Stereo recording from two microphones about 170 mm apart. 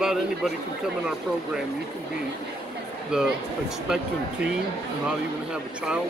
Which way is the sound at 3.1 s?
5° right (ahead or behind).